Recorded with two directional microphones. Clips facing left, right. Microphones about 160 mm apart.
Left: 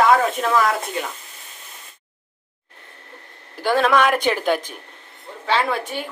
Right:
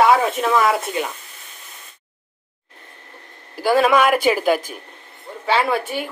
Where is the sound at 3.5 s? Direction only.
5° right (ahead or behind).